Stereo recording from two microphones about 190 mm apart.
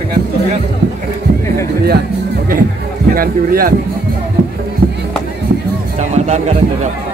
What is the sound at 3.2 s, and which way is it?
Speech, 50° right (ahead or behind).